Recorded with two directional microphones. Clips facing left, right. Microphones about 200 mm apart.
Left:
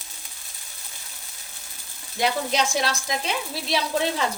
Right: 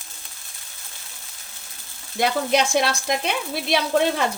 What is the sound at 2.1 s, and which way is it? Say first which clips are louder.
Speech: right 3 dB; 60° right (ahead or behind).